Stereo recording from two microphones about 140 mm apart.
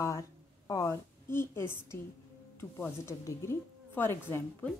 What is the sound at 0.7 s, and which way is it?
A woman's voice, 20° left (ahead or behind).